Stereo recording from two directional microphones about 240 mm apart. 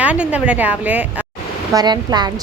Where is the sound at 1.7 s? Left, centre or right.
Centre.